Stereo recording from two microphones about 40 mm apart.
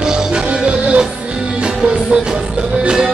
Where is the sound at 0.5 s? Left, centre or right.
Right.